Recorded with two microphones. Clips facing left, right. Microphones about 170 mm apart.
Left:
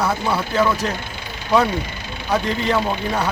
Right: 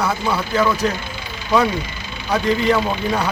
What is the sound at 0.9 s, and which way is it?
Vehicle, 60° left (ahead or behind).